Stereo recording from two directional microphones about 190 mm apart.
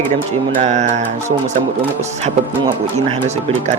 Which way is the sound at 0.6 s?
40° right (ahead or behind).